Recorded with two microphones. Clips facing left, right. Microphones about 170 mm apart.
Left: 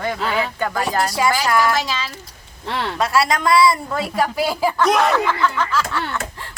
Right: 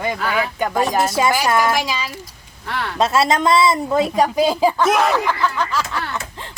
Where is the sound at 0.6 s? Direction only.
20° right (ahead or behind).